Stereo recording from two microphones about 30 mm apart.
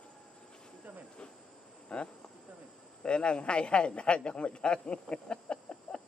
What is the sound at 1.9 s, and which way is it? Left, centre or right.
A man's voice, left.